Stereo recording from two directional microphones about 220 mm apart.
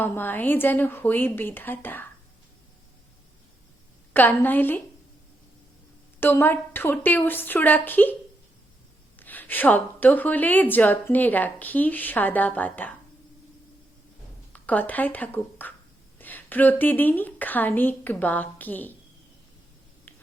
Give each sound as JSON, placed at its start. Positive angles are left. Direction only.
{"t": 0.0, "sound": "a woman's voice", "side_deg": 10}
{"t": 4.1, "sound": "a woman's voice", "side_deg": 10}
{"t": 6.1, "sound": "a woman's voice", "side_deg": 10}
{"t": 9.1, "sound": "a woman's voice", "side_deg": 10}
{"t": 14.5, "sound": "a woman's voice", "side_deg": 5}